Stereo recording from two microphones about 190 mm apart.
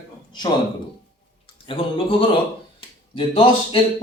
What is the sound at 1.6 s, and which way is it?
Speech, 30° left (ahead or behind).